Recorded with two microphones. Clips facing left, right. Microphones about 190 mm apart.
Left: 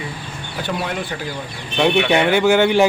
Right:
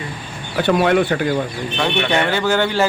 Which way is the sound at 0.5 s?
65° right (ahead or behind).